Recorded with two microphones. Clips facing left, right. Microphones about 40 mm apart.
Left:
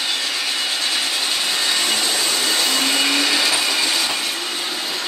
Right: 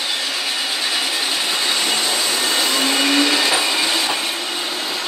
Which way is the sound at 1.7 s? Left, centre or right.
Centre.